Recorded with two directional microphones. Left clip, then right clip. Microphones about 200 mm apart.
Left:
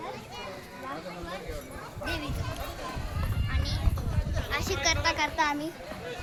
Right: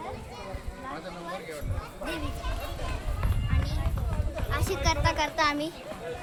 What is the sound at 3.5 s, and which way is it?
Run, 40° right (ahead or behind).